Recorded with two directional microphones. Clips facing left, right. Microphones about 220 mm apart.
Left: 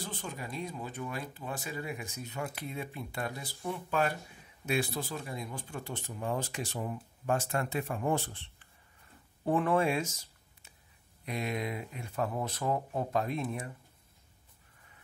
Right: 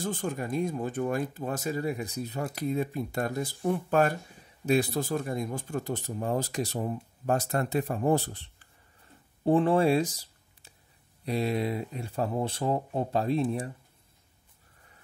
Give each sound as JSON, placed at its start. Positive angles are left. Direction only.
{"t": 0.0, "sound": "speech", "side_deg": -45}